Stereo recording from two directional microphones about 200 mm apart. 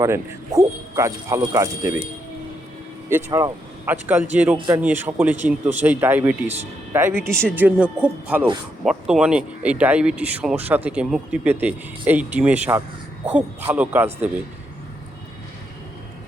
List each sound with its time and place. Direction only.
0.0 s speech: 15° right (ahead or behind)
3.1 s speech: 10° right (ahead or behind)
4.5 s a man's voice: 20° right (ahead or behind)
4.8 s speech: 10° right (ahead or behind)